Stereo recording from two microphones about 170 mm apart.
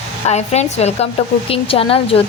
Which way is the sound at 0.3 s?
40° left (ahead or behind).